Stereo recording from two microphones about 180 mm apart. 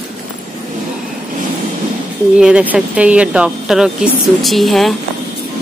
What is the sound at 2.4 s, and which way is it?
Speech, 5° right (ahead or behind).